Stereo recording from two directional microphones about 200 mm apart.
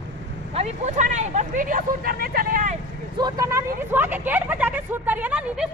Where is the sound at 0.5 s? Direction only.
30° right (ahead or behind).